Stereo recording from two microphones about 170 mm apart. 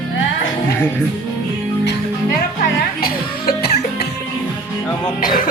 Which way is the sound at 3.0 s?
60° left (ahead or behind).